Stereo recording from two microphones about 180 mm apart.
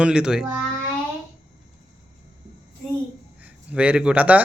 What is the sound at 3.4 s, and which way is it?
Speech, 5° right (ahead or behind).